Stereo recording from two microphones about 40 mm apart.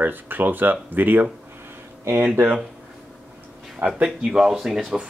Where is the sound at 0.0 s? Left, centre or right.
Right.